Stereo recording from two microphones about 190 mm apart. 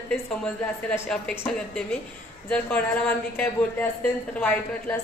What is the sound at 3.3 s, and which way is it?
A woman's voice, 10° left (ahead or behind).